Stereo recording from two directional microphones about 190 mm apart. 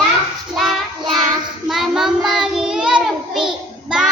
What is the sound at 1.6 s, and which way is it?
Child singing, centre (ahead or behind).